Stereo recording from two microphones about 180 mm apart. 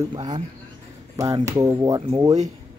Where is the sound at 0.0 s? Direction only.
25° right (ahead or behind).